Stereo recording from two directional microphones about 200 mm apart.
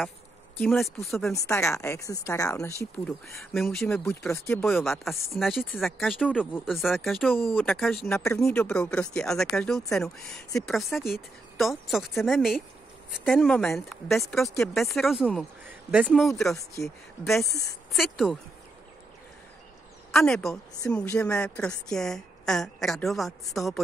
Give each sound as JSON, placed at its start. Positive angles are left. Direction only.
{"t": 0.6, "sound": "a woman's voice", "side_deg": 5}
{"t": 1.3, "sound": "a woman's voice", "side_deg": 15}
{"t": 4.6, "sound": "a woman's voice", "side_deg": 0}
{"t": 8.1, "sound": "a woman's voice", "side_deg": 10}
{"t": 16.5, "sound": "a woman's voice", "side_deg": 15}
{"t": 17.9, "sound": "a woman's voice", "side_deg": 0}
{"t": 20.1, "sound": "a woman's voice", "side_deg": 5}